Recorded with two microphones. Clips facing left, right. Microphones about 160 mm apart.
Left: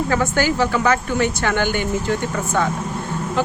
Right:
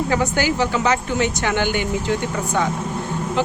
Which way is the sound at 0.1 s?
15° right (ahead or behind).